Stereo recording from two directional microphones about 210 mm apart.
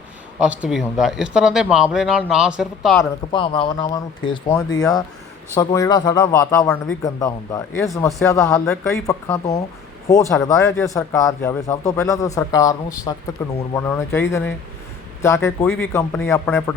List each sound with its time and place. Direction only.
0.3 s speech: 5° right (ahead or behind)
3.0 s speech: 25° left (ahead or behind)
8.6 s speech: 5° left (ahead or behind)
9.0 s speech: 15° left (ahead or behind)